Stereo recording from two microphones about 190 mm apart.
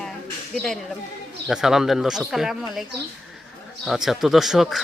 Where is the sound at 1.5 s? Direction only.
5° right (ahead or behind).